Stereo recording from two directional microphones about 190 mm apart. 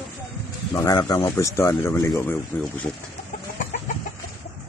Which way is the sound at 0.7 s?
20° left (ahead or behind).